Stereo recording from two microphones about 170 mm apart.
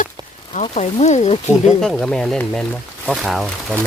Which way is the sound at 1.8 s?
Centre (ahead or behind).